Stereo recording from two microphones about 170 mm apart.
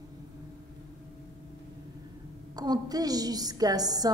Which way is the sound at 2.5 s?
20° right (ahead or behind).